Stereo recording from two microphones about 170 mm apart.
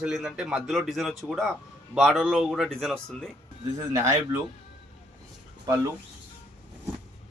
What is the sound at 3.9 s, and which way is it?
Speech, 15° right (ahead or behind).